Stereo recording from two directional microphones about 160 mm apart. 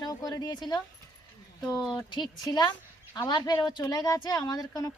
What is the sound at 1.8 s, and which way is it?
Speech, centre (ahead or behind).